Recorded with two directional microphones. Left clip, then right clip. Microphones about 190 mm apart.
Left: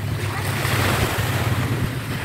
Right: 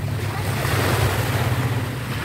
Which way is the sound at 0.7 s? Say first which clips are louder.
Even; 50° right (ahead or behind).